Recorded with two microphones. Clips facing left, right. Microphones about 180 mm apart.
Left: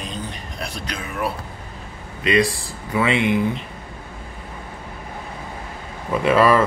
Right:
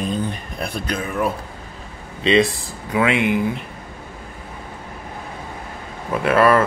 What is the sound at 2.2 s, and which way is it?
Speech, 25° right (ahead or behind).